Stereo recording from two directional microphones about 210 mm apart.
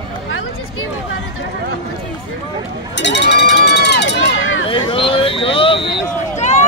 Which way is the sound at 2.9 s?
55° left (ahead or behind).